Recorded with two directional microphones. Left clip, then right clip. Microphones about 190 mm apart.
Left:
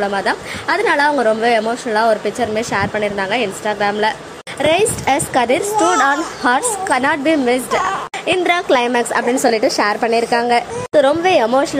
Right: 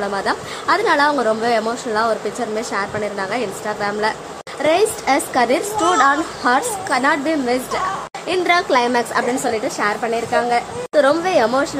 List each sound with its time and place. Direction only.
0.0 s a woman's voice: 5° left (ahead or behind)
9.5 s a woman's voice: 30° left (ahead or behind)
10.9 s a woman's voice: 20° left (ahead or behind)